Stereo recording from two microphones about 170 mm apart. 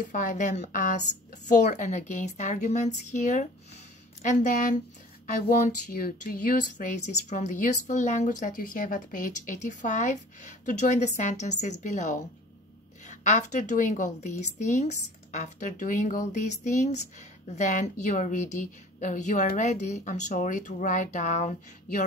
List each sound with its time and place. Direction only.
0.0 s speech: 50° left (ahead or behind)